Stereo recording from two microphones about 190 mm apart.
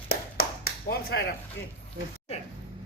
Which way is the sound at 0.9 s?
55° left (ahead or behind).